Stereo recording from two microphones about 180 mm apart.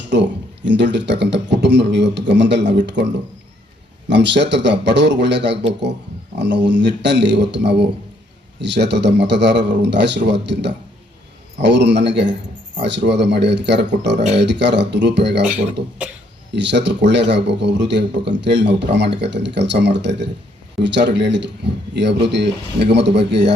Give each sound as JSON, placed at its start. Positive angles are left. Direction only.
{"t": 0.1, "sound": "a man's voice", "side_deg": -80}
{"t": 4.1, "sound": "a man's voice", "side_deg": -75}
{"t": 16.5, "sound": "a man's voice", "side_deg": -75}